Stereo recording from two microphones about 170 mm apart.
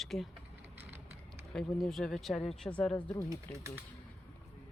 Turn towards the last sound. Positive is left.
turn(degrees=-15)  # may be behind; listen again after turning